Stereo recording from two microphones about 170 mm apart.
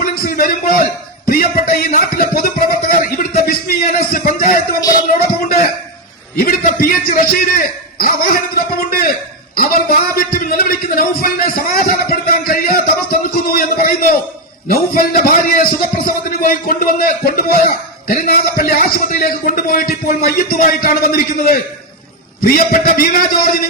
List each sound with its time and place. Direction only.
0.0 s a man's voice: 55° left (ahead or behind)
6.3 s a man's voice: 60° left (ahead or behind)